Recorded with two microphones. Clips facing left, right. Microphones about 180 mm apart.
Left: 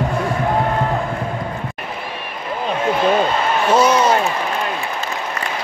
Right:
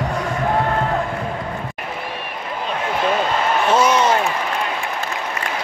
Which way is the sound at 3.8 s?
35° left (ahead or behind).